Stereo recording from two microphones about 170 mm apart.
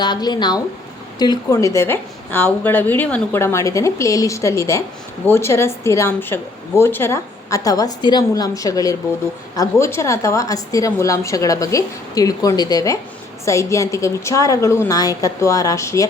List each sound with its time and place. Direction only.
0.0 s a woman's voice: 25° left (ahead or behind)